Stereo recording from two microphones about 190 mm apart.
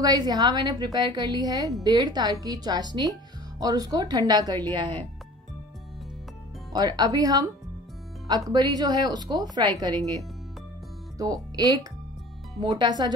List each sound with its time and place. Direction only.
0.0 s speech: 20° right (ahead or behind)
6.7 s speech: 20° right (ahead or behind)